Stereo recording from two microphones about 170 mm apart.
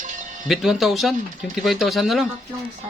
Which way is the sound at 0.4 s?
Centre (ahead or behind).